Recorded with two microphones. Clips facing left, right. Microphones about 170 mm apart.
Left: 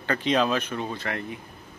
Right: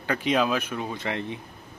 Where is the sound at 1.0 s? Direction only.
20° right (ahead or behind).